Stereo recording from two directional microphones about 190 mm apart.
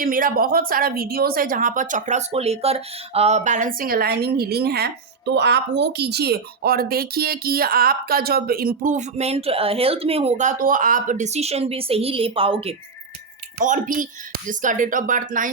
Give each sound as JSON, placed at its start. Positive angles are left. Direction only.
{"t": 0.0, "sound": "a woman's voice", "side_deg": -50}
{"t": 13.6, "sound": "a woman's voice", "side_deg": -45}